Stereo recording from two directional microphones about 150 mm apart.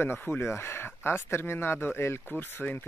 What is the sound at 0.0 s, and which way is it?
Speech, 15° left (ahead or behind).